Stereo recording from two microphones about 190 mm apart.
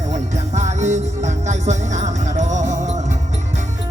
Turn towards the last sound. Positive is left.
turn(degrees=-40)  # may be behind; listen again after turning